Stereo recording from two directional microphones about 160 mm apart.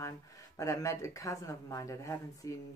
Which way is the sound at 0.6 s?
20° left (ahead or behind).